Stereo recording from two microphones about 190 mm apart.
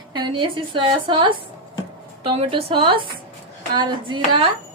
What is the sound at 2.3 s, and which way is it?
A woman's voice, 30° right (ahead or behind).